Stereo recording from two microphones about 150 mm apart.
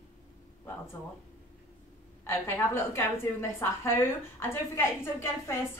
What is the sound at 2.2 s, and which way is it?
A woman's voice, 20° left (ahead or behind).